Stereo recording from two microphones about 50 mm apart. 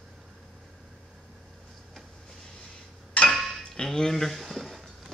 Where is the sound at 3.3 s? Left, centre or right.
Centre.